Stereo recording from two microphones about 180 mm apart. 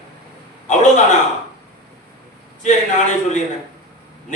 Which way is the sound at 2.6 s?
40° left (ahead or behind).